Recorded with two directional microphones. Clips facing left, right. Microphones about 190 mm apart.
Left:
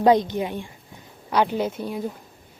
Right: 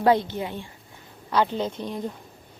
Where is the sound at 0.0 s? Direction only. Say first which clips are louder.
Left 3 dB; 15° left (ahead or behind).